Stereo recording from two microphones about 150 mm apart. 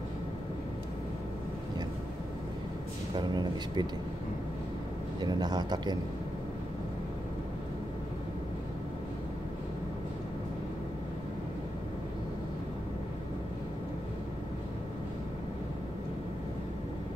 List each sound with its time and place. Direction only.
3.2 s speech: 30° right (ahead or behind)
5.2 s speech: 25° right (ahead or behind)